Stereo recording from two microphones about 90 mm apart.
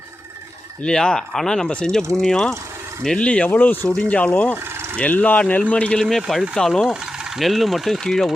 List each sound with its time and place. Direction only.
0.8 s speech: 10° left (ahead or behind)
4.5 s a sound: 25° right (ahead or behind)
4.9 s speech: 15° left (ahead or behind); by 8.3 s centre (ahead or behind)